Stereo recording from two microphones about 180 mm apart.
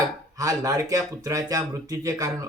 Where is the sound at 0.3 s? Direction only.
20° right (ahead or behind).